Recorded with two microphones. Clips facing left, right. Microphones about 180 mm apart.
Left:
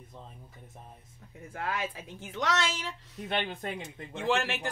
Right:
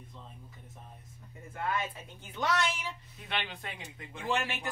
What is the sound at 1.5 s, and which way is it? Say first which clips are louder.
A woman's voice: even; 85° left.